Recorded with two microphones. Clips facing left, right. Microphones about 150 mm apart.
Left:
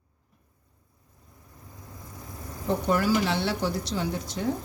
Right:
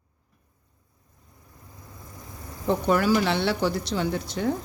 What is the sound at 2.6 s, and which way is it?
Speech, 80° right.